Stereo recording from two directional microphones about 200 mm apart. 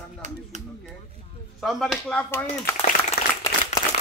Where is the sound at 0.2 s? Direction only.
35° right (ahead or behind).